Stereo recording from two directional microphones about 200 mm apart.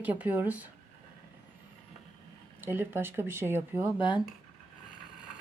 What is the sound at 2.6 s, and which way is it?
Speech, 10° right (ahead or behind).